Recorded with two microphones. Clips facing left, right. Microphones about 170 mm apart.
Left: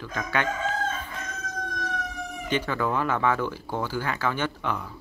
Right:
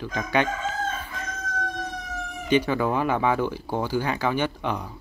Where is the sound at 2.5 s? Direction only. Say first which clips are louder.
Right 5 dB; 15° right (ahead or behind).